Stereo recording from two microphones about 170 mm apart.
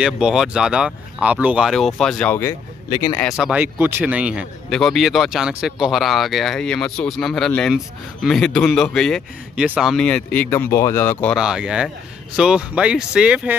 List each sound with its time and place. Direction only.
0.0 s a man's voice: 5° right (ahead or behind)
2.9 s speech: 20° left (ahead or behind)
3.2 s a man's voice: centre (ahead or behind)
11.3 s a man's voice: 5° right (ahead or behind)